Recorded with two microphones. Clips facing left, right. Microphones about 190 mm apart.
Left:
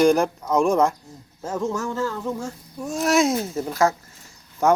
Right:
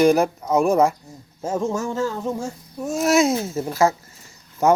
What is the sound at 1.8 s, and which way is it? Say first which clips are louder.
Speech: right 2 dB; 20° right (ahead or behind).